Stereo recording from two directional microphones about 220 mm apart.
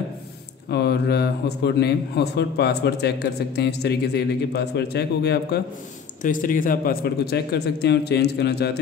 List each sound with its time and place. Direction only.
0.7 s a man's voice: 50° left (ahead or behind)
6.2 s a man's voice: 35° left (ahead or behind)